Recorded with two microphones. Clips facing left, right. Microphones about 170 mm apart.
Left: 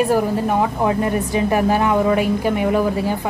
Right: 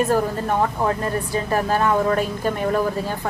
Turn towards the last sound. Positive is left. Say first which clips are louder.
# left 4 dB
turn(degrees=15)  # may be behind; listen again after turning